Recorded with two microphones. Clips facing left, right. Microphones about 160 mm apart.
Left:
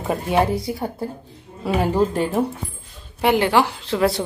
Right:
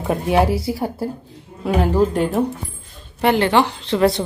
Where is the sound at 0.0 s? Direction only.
Centre (ahead or behind).